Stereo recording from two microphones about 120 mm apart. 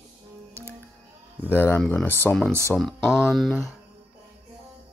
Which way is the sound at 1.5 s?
20° left (ahead or behind).